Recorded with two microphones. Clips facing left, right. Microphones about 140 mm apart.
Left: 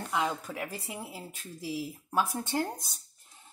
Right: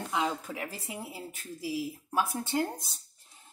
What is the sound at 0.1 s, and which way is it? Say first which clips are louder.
Speech: even; 15° right (ahead or behind).